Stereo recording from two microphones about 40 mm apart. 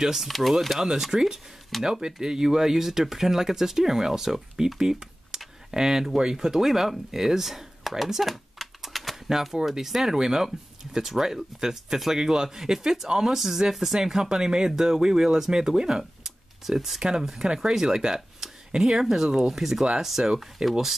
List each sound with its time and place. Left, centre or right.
0.0 s speech: centre
0.8 s speech: centre
20.6 s speech: right